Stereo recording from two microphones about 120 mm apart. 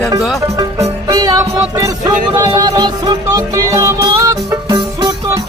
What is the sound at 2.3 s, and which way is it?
Music, 35° right (ahead or behind).